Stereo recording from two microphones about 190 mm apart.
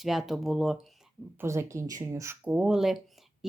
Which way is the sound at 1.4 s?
15° right (ahead or behind).